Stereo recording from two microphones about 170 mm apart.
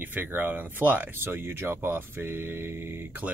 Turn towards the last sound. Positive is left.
turn(degrees=-10)  # may be behind; listen again after turning